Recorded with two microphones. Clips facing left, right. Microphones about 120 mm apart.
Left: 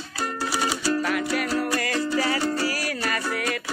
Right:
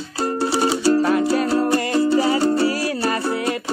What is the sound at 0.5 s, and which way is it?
Music, 30° right (ahead or behind).